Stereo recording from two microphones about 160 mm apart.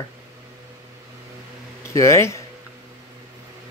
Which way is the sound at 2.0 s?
15° left (ahead or behind).